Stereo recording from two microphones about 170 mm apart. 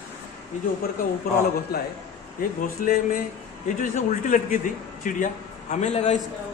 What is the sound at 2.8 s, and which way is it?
A man's voice, 50° left (ahead or behind).